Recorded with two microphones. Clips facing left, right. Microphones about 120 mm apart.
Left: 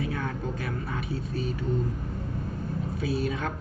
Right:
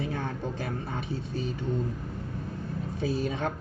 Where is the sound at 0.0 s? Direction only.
30° right (ahead or behind).